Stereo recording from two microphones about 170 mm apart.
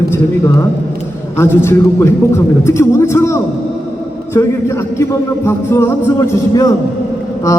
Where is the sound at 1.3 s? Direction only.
15° left (ahead or behind).